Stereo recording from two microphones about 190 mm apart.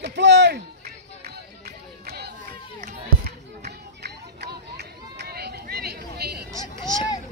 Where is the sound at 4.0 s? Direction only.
60° right (ahead or behind).